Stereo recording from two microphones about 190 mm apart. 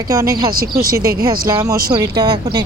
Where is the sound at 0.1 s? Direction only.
15° right (ahead or behind).